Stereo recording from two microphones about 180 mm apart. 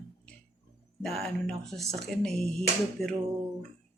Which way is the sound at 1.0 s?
Centre (ahead or behind).